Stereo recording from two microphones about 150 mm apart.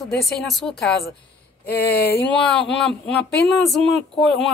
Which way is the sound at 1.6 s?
90° left.